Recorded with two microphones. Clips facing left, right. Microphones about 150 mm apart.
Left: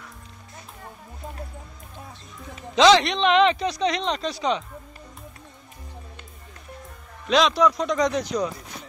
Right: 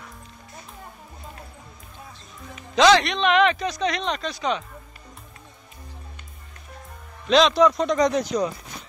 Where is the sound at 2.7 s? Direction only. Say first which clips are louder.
Left 1 dB; 20° left (ahead or behind).